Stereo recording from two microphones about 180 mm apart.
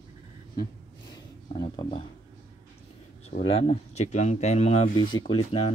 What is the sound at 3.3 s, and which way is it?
Speech, 30° left (ahead or behind).